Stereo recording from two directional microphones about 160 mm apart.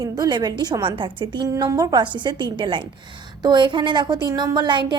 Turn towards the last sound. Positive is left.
turn(degrees=-30)  # may be behind; listen again after turning